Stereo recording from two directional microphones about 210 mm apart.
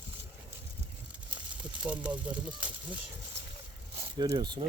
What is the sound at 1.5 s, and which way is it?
Speech, 5° right (ahead or behind).